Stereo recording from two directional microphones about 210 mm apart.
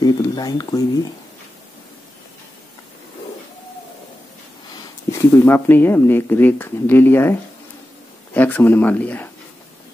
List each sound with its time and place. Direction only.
0.0 s speech: 20° left (ahead or behind)
5.1 s speech: 10° left (ahead or behind)
8.4 s speech: 10° left (ahead or behind)